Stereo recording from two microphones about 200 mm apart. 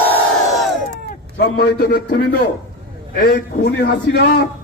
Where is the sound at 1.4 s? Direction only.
50° left (ahead or behind).